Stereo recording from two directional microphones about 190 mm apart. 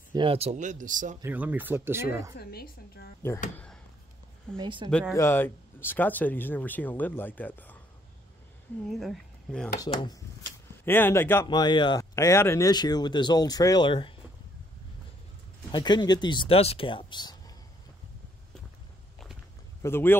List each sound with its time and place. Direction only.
0.1 s speech: 25° right (ahead or behind); by 1.1 s 45° right (ahead or behind)
1.2 s speech: 10° right (ahead or behind)
2.3 s speech: 55° left (ahead or behind)
3.5 s a sound: 5° left (ahead or behind)
4.6 s speech: 25° right (ahead or behind)
5.1 s speech: 15° left (ahead or behind)
8.8 s speech: centre (ahead or behind)
9.8 s speech: 20° left (ahead or behind)
10.4 s speech: 10° left (ahead or behind)
11.4 s speech: 25° left (ahead or behind)
15.7 s speech: 20° left (ahead or behind)
19.8 s speech: 10° left (ahead or behind)